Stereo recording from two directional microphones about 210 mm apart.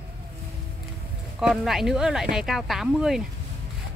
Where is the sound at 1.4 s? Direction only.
Centre (ahead or behind).